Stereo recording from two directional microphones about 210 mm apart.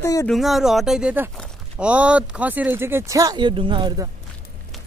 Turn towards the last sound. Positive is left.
turn(degrees=-20)  # may be behind; listen again after turning